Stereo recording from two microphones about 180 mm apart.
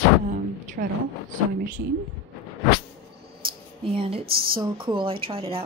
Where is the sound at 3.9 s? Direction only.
30° right (ahead or behind).